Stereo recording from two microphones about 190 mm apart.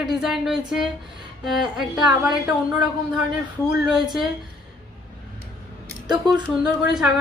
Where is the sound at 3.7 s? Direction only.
Centre (ahead or behind).